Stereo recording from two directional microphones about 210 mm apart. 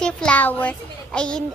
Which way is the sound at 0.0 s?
5° left (ahead or behind).